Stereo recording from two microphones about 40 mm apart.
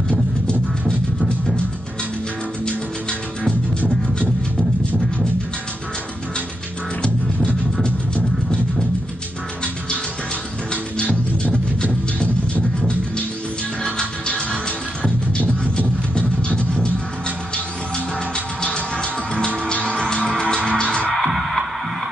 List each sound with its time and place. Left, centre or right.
2.6 s music: left
10.7 s music: left
13.8 s music: left
18.3 s music: left
21.1 s music: centre